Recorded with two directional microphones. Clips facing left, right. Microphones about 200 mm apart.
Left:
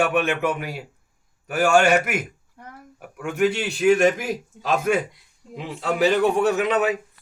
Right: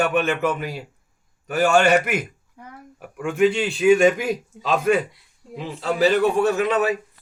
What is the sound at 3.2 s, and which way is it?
A man's voice, 5° left (ahead or behind).